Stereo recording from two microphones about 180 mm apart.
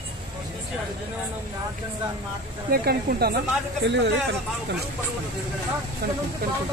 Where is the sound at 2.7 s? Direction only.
60° right (ahead or behind); by 4.1 s 75° right (ahead or behind).